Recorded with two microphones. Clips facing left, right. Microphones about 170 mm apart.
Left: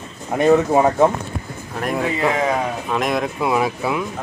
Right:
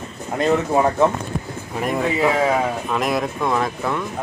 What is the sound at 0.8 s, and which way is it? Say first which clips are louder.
Speech: left 2 dB; 10° left (ahead or behind).